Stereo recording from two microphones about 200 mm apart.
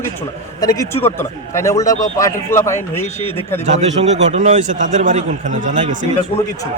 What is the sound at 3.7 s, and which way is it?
A man's voice, 35° right (ahead or behind).